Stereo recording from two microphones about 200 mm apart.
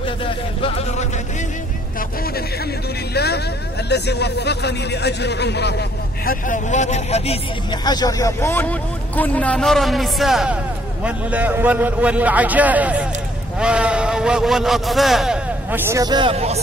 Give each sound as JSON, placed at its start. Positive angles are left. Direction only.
{"t": 0.2, "sound": "a sound", "side_deg": 30}
{"t": 3.2, "sound": "speech", "side_deg": 55}
{"t": 7.8, "sound": "a man's voice", "side_deg": 20}